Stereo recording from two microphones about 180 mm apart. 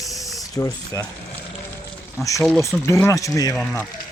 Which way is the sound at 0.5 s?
20° left (ahead or behind).